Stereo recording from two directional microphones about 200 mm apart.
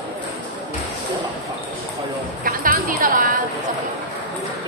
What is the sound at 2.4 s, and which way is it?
Music, 45° right (ahead or behind).